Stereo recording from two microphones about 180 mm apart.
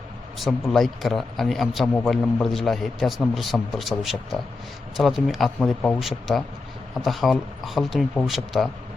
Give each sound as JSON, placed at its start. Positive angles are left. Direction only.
{"t": 0.3, "sound": "a man's voice", "side_deg": 0}